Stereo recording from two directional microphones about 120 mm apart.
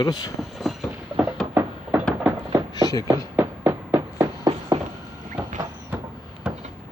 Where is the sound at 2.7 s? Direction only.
30° left (ahead or behind).